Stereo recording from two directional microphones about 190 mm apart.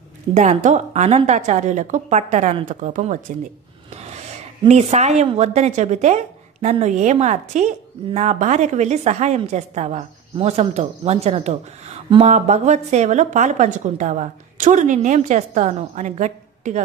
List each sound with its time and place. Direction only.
0.3 s speech: 35° right (ahead or behind)
3.9 s gasp: 35° right (ahead or behind)
4.6 s speech: 35° right (ahead or behind)